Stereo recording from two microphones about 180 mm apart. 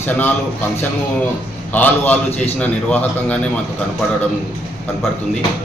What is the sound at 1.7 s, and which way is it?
A man's voice, 10° left (ahead or behind).